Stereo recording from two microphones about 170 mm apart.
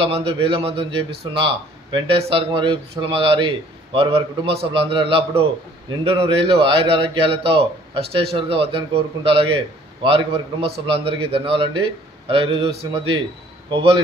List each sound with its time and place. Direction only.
0.0 s a man's voice: 35° right (ahead or behind)